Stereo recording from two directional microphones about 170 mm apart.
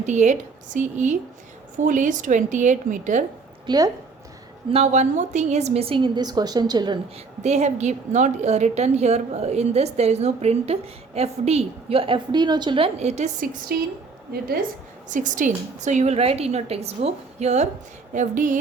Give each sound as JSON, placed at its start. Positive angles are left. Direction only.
{"t": 0.0, "sound": "a woman's voice", "side_deg": -45}
{"t": 3.7, "sound": "speech", "side_deg": -20}
{"t": 4.7, "sound": "a woman's voice", "side_deg": -40}
{"t": 7.4, "sound": "a woman's voice", "side_deg": -40}
{"t": 13.7, "sound": "a woman's voice", "side_deg": -60}
{"t": 15.1, "sound": "a woman's voice", "side_deg": -50}